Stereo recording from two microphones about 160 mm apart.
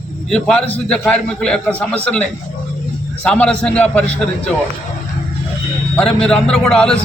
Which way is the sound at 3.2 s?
5° left (ahead or behind).